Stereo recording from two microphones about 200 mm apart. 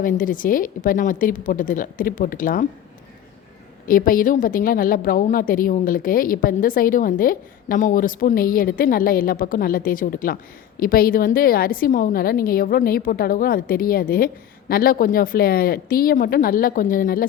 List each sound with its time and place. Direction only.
0.0 s a woman's voice: 40° left (ahead or behind)
3.8 s a woman's voice: 45° left (ahead or behind)